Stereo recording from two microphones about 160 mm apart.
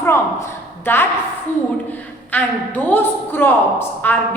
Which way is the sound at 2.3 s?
10° left (ahead or behind).